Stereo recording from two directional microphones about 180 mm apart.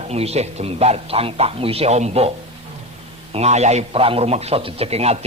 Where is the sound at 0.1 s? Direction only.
35° right (ahead or behind).